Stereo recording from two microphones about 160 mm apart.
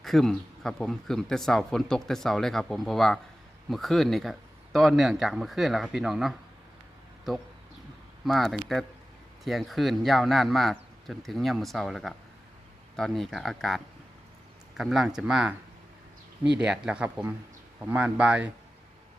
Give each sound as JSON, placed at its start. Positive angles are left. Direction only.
{"t": 0.0, "sound": "speech", "side_deg": 0}
{"t": 8.2, "sound": "speech", "side_deg": 0}
{"t": 16.6, "sound": "speech", "side_deg": -5}